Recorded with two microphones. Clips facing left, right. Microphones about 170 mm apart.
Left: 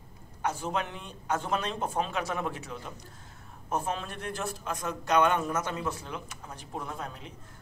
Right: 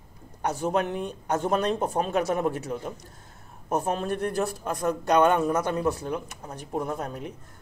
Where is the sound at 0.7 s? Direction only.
50° right (ahead or behind).